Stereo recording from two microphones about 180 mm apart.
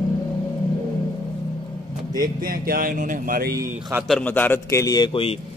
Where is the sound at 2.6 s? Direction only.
50° right (ahead or behind).